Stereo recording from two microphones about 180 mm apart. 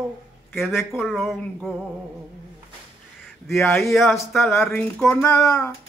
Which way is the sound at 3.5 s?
Centre (ahead or behind).